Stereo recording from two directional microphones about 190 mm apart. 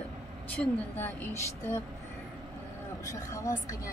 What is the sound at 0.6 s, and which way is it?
A woman's voice, 10° left (ahead or behind).